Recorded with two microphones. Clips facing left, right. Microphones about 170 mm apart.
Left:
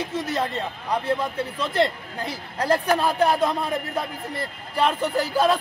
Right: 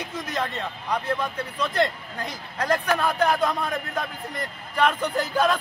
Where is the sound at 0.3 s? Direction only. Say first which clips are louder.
Even; 30° left (ahead or behind).